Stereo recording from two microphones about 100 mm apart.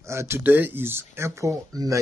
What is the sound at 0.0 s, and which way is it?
Speech, 30° right (ahead or behind).